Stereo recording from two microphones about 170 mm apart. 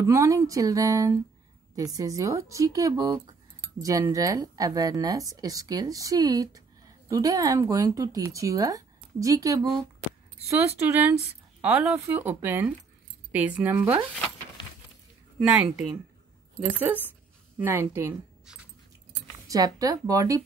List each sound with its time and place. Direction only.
0.0 s speech: 20° right (ahead or behind)
10.9 s speech: 10° right (ahead or behind)
15.3 s speech: 5° right (ahead or behind)
19.4 s speech: 20° right (ahead or behind)